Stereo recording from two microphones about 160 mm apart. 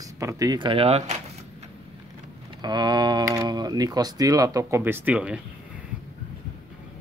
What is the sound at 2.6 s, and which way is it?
Speech, 25° right (ahead or behind).